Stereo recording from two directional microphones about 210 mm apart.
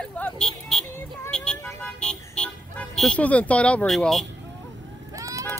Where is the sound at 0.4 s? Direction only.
Centre (ahead or behind).